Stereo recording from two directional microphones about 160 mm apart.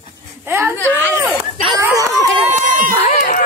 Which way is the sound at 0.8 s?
15° left (ahead or behind).